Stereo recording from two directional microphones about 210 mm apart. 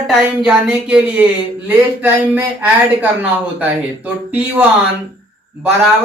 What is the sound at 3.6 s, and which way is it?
Speech, 5° right (ahead or behind).